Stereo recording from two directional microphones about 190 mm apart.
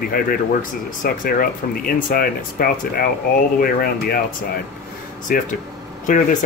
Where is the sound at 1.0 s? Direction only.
50° left (ahead or behind).